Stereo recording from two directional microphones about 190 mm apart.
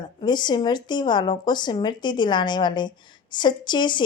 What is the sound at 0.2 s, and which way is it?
Speech, 25° left (ahead or behind).